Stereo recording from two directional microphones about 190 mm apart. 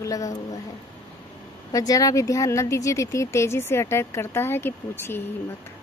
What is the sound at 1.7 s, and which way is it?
Speech, 20° left (ahead or behind).